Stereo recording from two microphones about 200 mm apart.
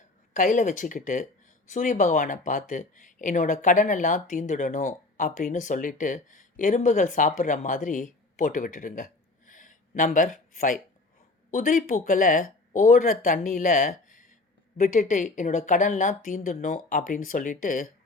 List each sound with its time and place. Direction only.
0.3 s speech: 40° left (ahead or behind)
9.5 s a sound: 40° left (ahead or behind)
11.5 s speech: 40° left (ahead or behind)